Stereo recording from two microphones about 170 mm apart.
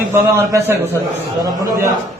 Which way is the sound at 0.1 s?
15° right (ahead or behind).